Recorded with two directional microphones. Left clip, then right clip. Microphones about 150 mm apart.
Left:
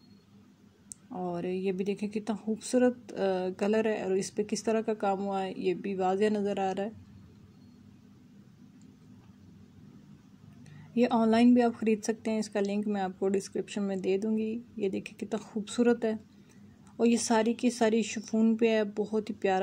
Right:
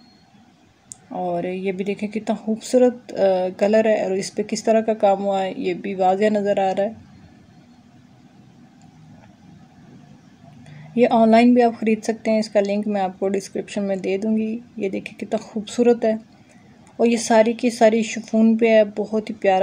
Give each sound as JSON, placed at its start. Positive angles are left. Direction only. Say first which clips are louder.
{"t": 1.1, "sound": "speech", "louder": "right 10 dB", "side_deg": 30}
{"t": 11.0, "sound": "speech", "louder": "right 11 dB", "side_deg": 30}